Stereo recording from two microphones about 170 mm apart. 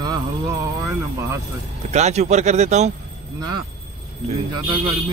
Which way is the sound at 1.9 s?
40° right (ahead or behind).